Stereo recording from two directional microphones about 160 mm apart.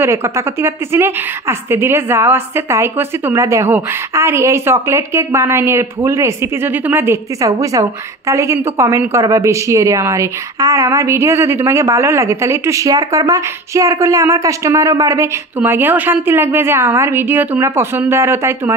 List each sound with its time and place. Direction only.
0.0 s a woman's voice: 15° right (ahead or behind)